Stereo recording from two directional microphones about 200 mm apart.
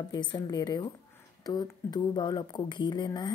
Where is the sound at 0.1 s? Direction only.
20° left (ahead or behind).